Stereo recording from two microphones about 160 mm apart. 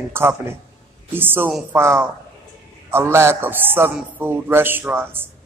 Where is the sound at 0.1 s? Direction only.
15° right (ahead or behind).